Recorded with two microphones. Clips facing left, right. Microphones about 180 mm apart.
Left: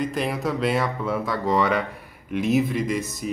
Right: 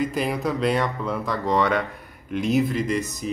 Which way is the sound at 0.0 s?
Centre (ahead or behind).